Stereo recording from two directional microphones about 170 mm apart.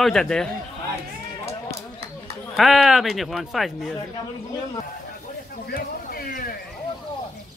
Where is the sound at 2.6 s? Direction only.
Centre (ahead or behind).